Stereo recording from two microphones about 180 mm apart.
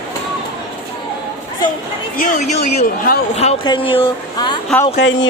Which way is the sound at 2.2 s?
45° left (ahead or behind).